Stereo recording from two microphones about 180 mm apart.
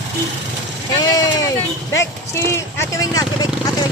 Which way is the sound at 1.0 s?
20° left (ahead or behind).